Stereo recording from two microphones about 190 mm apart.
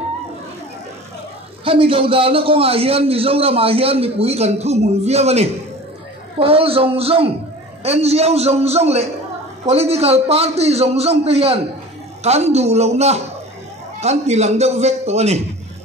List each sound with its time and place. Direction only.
1.6 s a man's voice: 30° right (ahead or behind)